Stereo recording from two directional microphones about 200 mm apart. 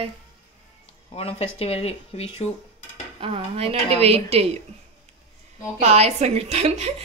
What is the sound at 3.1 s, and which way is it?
A woman's voice, 30° right (ahead or behind).